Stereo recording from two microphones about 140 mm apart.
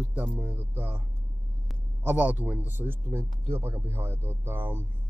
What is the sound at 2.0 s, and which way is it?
Speech, 10° right (ahead or behind).